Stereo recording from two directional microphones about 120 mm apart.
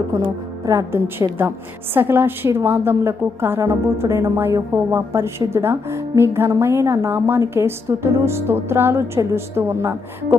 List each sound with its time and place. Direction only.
0.6 s a woman's voice: 25° right (ahead or behind)